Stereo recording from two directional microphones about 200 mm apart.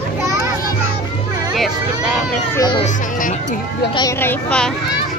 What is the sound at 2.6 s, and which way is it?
Speech, 25° left (ahead or behind).